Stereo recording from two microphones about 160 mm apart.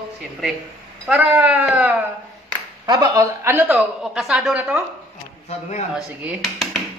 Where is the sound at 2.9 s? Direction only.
25° right (ahead or behind); by 4.8 s 5° right (ahead or behind).